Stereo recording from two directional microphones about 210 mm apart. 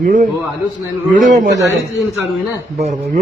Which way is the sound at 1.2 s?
35° right (ahead or behind).